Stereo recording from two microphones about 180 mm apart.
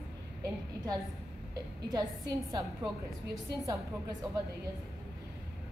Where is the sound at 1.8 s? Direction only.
20° right (ahead or behind).